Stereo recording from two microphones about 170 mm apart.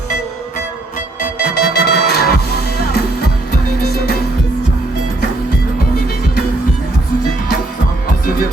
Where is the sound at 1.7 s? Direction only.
70° left (ahead or behind).